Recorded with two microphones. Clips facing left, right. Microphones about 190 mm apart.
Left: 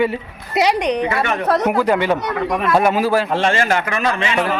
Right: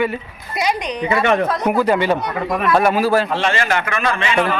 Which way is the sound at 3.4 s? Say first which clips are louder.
Left 2 dB; 45° left (ahead or behind).